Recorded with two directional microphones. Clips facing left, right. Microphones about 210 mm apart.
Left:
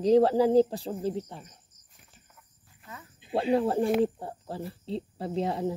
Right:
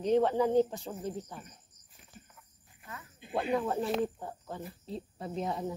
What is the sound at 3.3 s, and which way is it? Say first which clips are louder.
Speech: left 6 dB; 30° left (ahead or behind).